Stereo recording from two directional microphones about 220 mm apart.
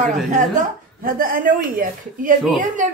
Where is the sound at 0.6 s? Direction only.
40° right (ahead or behind).